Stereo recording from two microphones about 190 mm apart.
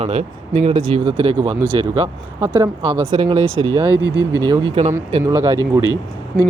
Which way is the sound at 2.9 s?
25° right (ahead or behind).